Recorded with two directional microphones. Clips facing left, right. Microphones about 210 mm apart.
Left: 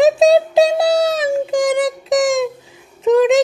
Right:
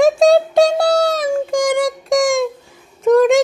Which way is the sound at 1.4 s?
Centre (ahead or behind).